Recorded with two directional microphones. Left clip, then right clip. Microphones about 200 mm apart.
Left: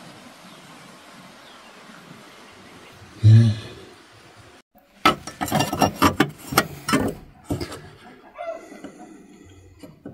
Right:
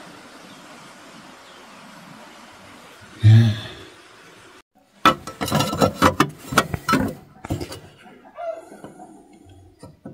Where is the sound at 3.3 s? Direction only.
40° right (ahead or behind).